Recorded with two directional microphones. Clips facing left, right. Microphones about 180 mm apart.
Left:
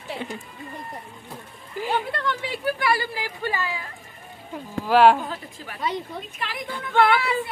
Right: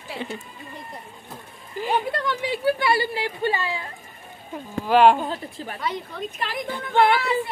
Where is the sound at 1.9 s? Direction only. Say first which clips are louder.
Right 2 dB; 20° right (ahead or behind).